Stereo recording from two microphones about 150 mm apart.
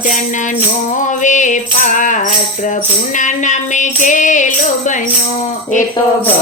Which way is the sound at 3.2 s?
55° left (ahead or behind).